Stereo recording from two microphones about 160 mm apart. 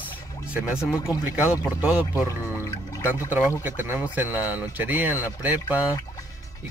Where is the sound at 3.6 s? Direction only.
10° right (ahead or behind).